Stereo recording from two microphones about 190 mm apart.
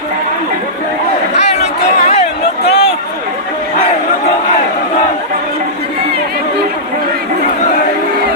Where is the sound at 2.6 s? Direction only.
60° left (ahead or behind).